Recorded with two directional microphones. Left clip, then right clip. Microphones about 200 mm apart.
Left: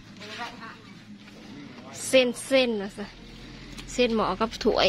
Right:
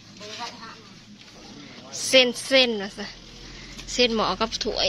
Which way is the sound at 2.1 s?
5° left (ahead or behind).